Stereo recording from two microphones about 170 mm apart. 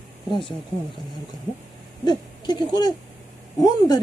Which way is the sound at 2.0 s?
25° left (ahead or behind).